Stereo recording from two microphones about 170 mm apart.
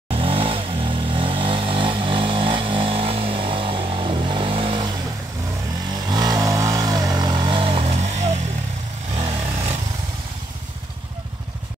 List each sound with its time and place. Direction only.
0.1 s vehicle: 35° right (ahead or behind)
6.0 s vehicle: 25° right (ahead or behind)